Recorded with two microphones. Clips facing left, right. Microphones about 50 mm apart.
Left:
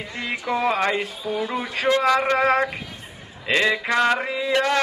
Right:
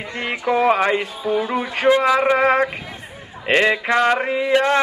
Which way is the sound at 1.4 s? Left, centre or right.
Right.